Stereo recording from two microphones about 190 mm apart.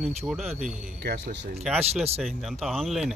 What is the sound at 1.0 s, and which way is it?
Speech, 60° right (ahead or behind).